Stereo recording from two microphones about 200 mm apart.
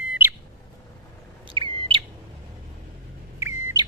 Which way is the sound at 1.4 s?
25° right (ahead or behind).